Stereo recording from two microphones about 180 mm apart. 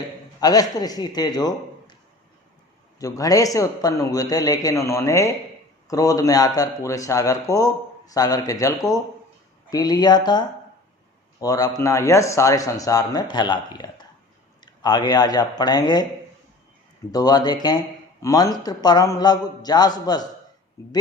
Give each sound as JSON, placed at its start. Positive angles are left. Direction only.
{"t": 0.3, "sound": "a man's voice", "side_deg": 20}
{"t": 3.0, "sound": "speech", "side_deg": 20}
{"t": 17.1, "sound": "speech", "side_deg": 20}